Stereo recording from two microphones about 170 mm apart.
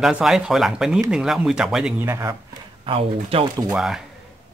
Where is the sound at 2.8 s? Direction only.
30° right (ahead or behind).